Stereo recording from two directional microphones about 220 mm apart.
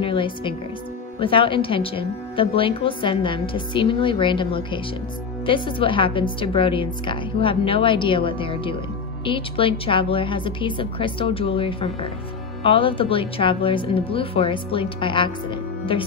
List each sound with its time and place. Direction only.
0.0 s music: 25° left (ahead or behind)
1.2 s a woman's voice: 25° left (ahead or behind)